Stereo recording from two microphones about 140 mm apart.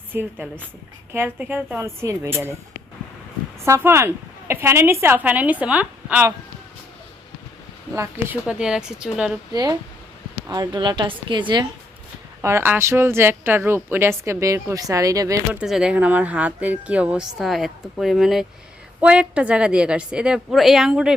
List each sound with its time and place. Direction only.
0.1 s speech: 15° right (ahead or behind)
3.6 s speech: 20° right (ahead or behind)
7.9 s speech: 20° right (ahead or behind)
9.5 s a woman's voice: 30° right (ahead or behind)
12.4 s a woman's voice: 20° right (ahead or behind)
15.6 s speech: 5° right (ahead or behind)